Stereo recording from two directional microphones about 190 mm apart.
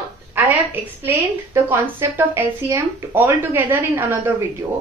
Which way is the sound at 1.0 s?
10° right (ahead or behind).